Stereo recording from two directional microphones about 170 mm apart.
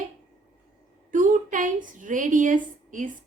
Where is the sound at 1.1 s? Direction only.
50° right (ahead or behind).